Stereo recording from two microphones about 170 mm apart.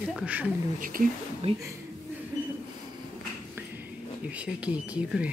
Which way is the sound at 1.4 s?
35° right (ahead or behind).